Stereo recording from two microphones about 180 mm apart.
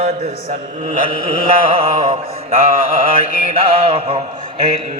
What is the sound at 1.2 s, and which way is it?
Music, 35° right (ahead or behind).